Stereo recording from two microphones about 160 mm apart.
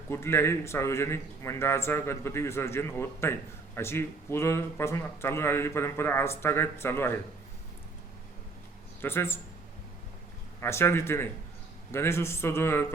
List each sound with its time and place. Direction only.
0.1 s a man's voice: 15° left (ahead or behind)
9.0 s a man's voice: 15° left (ahead or behind)
10.6 s a man's voice: 15° left (ahead or behind)